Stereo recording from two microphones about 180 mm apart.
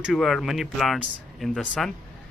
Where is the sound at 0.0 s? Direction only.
Centre (ahead or behind).